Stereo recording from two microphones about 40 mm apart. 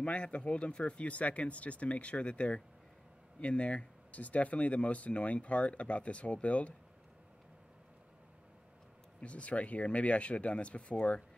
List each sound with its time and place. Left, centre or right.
0.0 s speech: left
9.2 s speech: left